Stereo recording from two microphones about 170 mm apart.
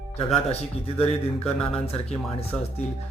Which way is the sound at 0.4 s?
35° left (ahead or behind).